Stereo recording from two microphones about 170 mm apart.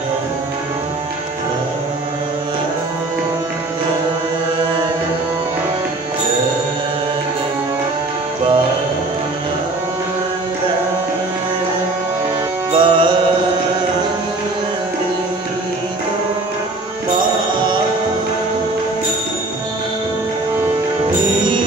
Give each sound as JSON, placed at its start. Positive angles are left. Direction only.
{"t": 12.7, "sound": "music", "side_deg": -30}
{"t": 21.4, "sound": "music", "side_deg": -25}